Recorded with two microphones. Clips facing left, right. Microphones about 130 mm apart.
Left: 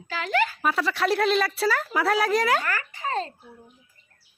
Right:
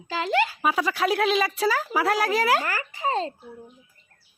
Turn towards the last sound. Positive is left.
turn(degrees=-25)  # may be behind; listen again after turning